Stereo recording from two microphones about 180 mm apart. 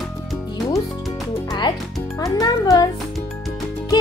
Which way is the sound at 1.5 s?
25° left (ahead or behind).